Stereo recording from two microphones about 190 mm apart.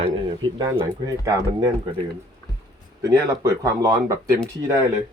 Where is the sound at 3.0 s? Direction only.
15° right (ahead or behind).